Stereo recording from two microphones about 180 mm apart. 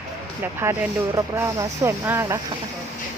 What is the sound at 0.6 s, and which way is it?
Speech, 15° right (ahead or behind).